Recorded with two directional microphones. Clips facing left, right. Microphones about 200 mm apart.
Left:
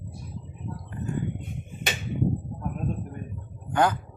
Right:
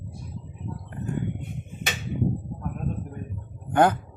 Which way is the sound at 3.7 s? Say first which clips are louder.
Right 3 dB; 55° right (ahead or behind).